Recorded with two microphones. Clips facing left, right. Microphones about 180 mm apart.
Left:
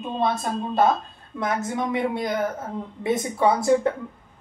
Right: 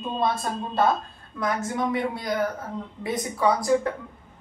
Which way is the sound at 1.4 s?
25° left (ahead or behind).